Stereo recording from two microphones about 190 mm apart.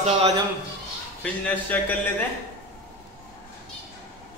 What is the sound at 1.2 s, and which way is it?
Speech, 10° left (ahead or behind).